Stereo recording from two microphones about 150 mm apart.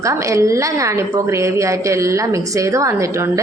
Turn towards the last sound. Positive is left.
turn(degrees=-20)  # may be behind; listen again after turning